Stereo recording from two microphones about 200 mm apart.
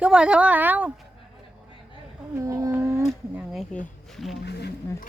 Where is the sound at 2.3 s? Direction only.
15° right (ahead or behind).